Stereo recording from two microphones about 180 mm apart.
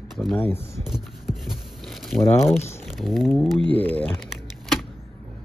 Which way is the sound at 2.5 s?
15° left (ahead or behind).